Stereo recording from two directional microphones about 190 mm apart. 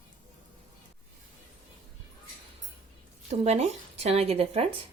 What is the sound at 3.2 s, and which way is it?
Speech, 35° right (ahead or behind).